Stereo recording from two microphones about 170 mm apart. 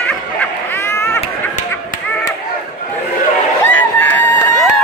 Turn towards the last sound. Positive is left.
turn(degrees=10)  # may be behind; listen again after turning